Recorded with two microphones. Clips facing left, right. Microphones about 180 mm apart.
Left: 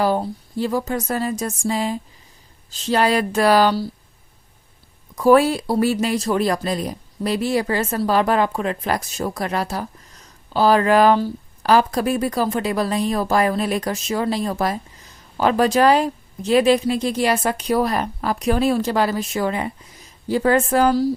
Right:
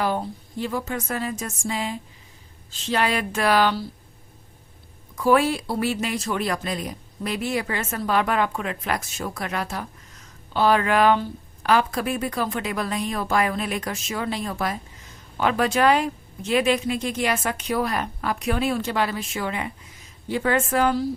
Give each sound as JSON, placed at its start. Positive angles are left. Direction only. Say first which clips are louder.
{"t": 0.0, "sound": "speech", "louder": "left 5 dB", "side_deg": 35}
{"t": 5.1, "sound": "speech", "louder": "left 5 dB", "side_deg": 40}